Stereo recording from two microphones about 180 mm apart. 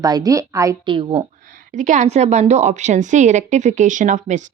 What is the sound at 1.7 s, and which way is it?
A woman's voice, 45° right (ahead or behind).